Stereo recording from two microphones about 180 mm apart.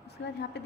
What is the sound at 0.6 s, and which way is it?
Speech, 70° left (ahead or behind).